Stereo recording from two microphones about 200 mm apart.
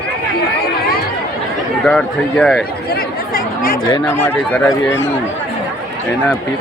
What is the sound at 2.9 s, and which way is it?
Chatter, 45° left (ahead or behind).